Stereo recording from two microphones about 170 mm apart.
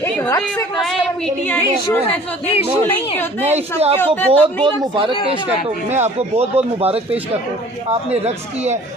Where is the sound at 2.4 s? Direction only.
35° left (ahead or behind).